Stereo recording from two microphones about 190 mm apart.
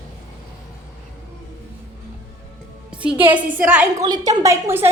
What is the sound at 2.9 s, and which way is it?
Music, 5° right (ahead or behind).